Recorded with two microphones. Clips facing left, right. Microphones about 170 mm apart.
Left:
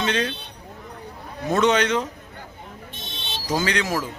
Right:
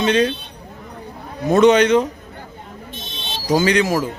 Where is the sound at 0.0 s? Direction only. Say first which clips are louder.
Right 8 dB; 15° right (ahead or behind).